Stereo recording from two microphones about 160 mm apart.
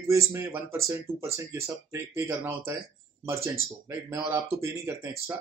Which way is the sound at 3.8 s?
15° right (ahead or behind).